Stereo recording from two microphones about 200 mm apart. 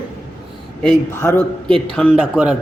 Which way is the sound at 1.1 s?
10° left (ahead or behind).